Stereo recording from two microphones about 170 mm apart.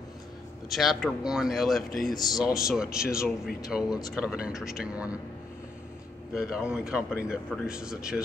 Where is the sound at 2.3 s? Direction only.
20° left (ahead or behind).